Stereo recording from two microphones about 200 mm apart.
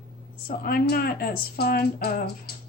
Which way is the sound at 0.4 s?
45° left (ahead or behind).